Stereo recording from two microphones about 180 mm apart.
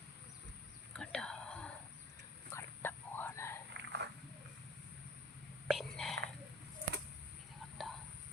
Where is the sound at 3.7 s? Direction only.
70° right (ahead or behind).